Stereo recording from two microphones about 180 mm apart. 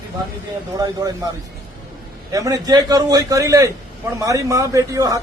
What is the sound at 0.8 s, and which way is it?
Speech, 20° right (ahead or behind).